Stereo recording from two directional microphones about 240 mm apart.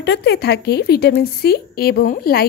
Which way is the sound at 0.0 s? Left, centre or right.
Left.